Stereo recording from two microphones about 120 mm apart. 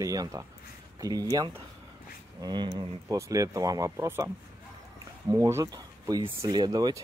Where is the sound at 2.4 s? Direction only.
40° right (ahead or behind).